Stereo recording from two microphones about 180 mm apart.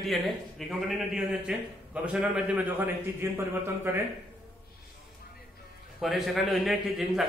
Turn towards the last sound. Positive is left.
turn(degrees=0)  # may be behind; listen again after turning